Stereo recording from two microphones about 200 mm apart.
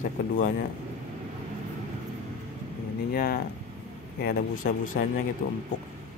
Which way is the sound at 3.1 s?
50° left (ahead or behind).